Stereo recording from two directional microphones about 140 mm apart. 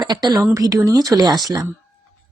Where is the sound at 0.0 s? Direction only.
30° right (ahead or behind).